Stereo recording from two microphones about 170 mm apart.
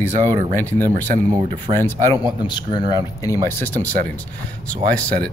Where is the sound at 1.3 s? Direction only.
20° right (ahead or behind).